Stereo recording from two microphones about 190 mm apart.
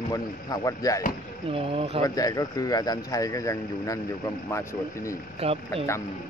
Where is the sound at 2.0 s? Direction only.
20° left (ahead or behind).